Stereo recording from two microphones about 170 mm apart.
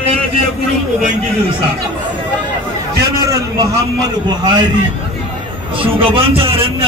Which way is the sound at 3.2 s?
20° right (ahead or behind).